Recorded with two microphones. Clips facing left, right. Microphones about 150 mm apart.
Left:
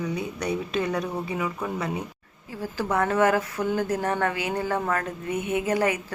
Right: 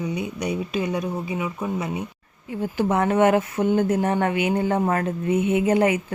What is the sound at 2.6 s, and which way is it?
Speech, 25° right (ahead or behind).